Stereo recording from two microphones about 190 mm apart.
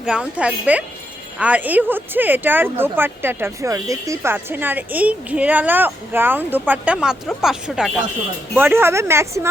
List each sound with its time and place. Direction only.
0.0 s speech: 5° right (ahead or behind)